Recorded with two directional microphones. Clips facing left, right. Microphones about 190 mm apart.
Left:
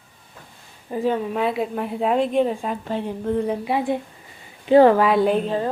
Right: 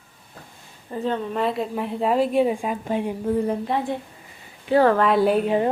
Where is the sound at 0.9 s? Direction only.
10° left (ahead or behind).